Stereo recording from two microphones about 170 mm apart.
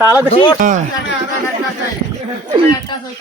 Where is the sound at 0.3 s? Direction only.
30° left (ahead or behind).